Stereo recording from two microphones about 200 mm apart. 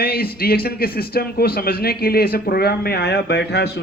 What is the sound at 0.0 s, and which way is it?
Speech, 50° left (ahead or behind).